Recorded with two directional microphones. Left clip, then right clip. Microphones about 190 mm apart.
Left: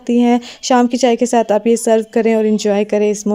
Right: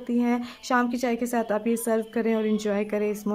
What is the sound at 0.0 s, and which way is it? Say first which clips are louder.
A woman's voice: left 12 dB; 30° left (ahead or behind).